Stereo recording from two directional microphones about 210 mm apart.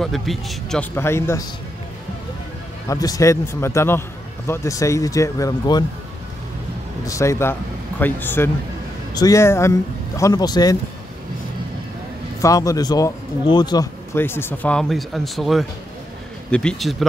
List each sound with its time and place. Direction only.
0.0 s speech: centre (ahead or behind)
2.9 s a man's voice: 15° left (ahead or behind)
7.1 s a man's voice: 15° left (ahead or behind)
12.4 s a man's voice: 15° left (ahead or behind)